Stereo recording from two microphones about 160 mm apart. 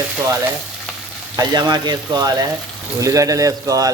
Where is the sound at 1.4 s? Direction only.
25° right (ahead or behind).